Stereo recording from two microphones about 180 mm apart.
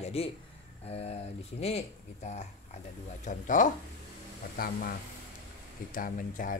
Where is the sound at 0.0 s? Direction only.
35° left (ahead or behind).